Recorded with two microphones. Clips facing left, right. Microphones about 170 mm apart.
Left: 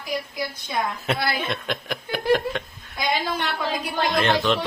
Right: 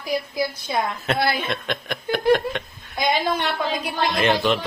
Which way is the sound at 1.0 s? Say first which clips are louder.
Right 2 dB; 10° left (ahead or behind).